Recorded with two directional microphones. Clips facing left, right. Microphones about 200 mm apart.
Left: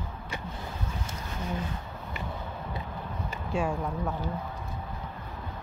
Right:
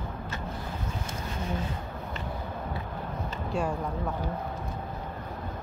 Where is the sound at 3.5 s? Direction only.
Centre (ahead or behind).